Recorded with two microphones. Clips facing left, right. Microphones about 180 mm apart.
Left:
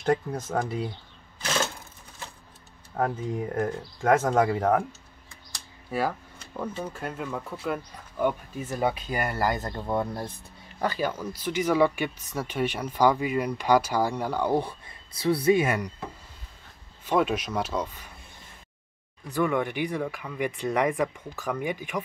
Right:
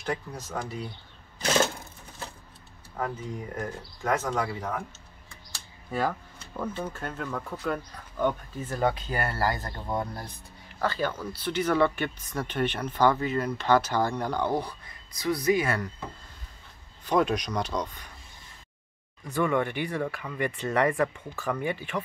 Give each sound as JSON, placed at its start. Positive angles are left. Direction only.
{"t": 0.0, "sound": "speech", "side_deg": 50}
{"t": 3.5, "sound": "speech", "side_deg": 50}
{"t": 5.9, "sound": "a sound", "side_deg": 5}
{"t": 6.8, "sound": "speech", "side_deg": 10}
{"t": 10.8, "sound": "speech", "side_deg": 10}
{"t": 14.5, "sound": "speech", "side_deg": 25}
{"t": 17.0, "sound": "speech", "side_deg": 0}
{"t": 19.3, "sound": "speech", "side_deg": 10}